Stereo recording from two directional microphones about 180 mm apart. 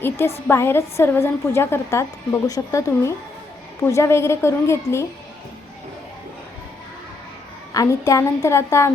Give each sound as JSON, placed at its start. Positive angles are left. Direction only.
{"t": 0.0, "sound": "a woman's voice", "side_deg": 15}
{"t": 7.7, "sound": "a woman's voice", "side_deg": 20}